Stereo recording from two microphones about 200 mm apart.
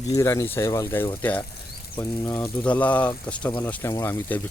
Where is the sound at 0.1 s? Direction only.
15° left (ahead or behind).